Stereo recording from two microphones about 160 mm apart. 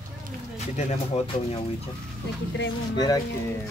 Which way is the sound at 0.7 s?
40° left (ahead or behind).